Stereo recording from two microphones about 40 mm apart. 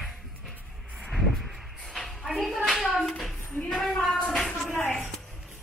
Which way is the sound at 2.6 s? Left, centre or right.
Centre.